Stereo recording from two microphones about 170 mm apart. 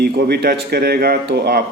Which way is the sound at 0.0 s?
70° right (ahead or behind).